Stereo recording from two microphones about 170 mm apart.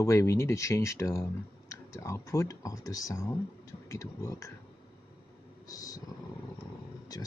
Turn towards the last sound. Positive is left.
turn(degrees=20)  # may be behind; listen again after turning